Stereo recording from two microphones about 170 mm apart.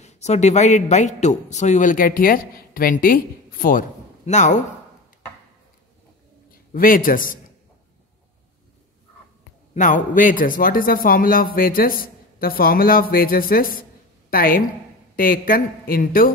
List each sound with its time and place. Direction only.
0.0 s a man's voice: 40° left (ahead or behind)
4.3 s a man's voice: 45° left (ahead or behind)
6.5 s a man's voice: 55° left (ahead or behind)
9.8 s a man's voice: 50° left (ahead or behind)